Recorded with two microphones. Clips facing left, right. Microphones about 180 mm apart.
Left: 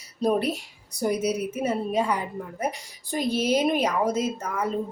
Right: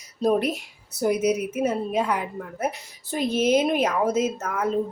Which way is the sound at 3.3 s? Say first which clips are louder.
Right 4 dB; 35° left (ahead or behind).